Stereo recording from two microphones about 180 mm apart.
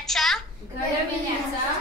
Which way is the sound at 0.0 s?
Centre (ahead or behind).